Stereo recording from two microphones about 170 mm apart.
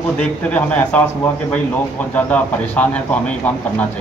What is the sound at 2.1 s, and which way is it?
A man's voice, 10° left (ahead or behind).